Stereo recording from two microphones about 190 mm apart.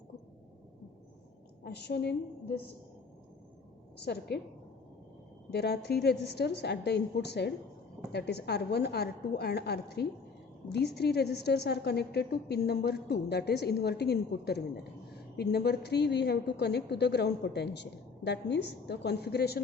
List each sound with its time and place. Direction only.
1.6 s a woman's voice: 60° left (ahead or behind)
3.9 s a woman's voice: 60° left (ahead or behind)
5.5 s a woman's voice: 60° left (ahead or behind)